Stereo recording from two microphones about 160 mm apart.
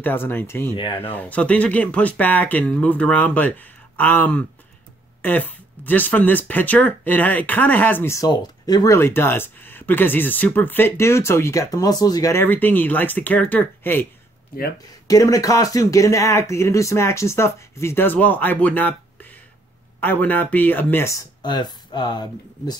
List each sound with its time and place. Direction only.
0.0 s speech: 15° left (ahead or behind)
0.7 s speech: 30° left (ahead or behind)
1.1 s speech: 10° left (ahead or behind)
15.0 s speech: 20° left (ahead or behind)
21.4 s speech: 25° left (ahead or behind)